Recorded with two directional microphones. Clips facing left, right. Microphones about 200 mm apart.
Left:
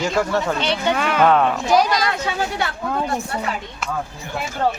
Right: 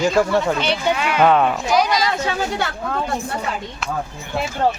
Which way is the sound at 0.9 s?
45° left (ahead or behind).